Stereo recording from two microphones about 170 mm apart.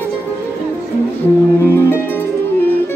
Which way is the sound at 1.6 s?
15° left (ahead or behind).